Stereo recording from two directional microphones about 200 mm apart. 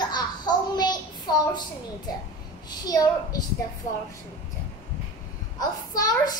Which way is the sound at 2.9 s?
20° left (ahead or behind).